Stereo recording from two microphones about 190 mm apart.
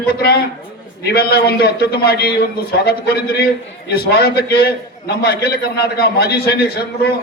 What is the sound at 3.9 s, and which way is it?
A man's voice, 55° left (ahead or behind).